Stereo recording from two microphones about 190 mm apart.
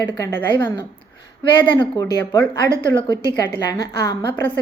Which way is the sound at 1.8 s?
20° left (ahead or behind).